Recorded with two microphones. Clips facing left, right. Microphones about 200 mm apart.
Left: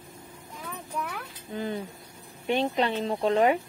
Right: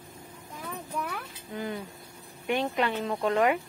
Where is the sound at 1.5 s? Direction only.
25° left (ahead or behind).